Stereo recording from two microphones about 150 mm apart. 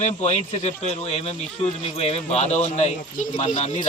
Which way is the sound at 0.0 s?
50° left (ahead or behind).